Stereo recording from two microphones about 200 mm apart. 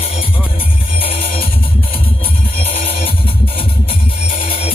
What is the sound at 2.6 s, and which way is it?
Music, 30° left (ahead or behind).